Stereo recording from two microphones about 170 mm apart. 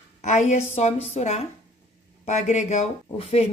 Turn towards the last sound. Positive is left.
turn(degrees=35)  # may be behind; listen again after turning